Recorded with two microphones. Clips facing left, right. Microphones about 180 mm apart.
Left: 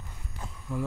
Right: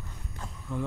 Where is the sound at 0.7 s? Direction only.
5° left (ahead or behind).